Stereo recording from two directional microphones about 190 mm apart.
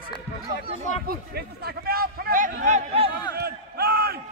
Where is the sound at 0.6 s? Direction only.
35° right (ahead or behind).